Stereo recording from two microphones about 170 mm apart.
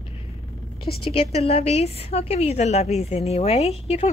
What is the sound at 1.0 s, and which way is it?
A woman's voice, 35° left (ahead or behind).